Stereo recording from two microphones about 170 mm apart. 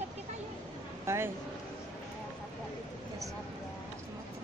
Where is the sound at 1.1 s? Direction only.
15° right (ahead or behind).